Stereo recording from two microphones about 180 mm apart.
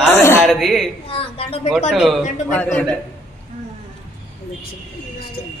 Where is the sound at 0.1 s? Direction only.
15° left (ahead or behind).